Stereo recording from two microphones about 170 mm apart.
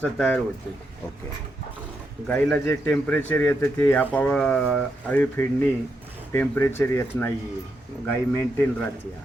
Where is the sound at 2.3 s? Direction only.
5° left (ahead or behind).